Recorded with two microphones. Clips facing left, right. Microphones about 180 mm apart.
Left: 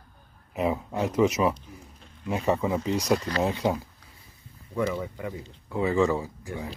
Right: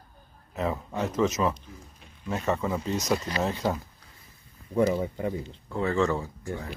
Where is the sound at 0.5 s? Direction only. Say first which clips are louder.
Left 3 dB; 15° left (ahead or behind).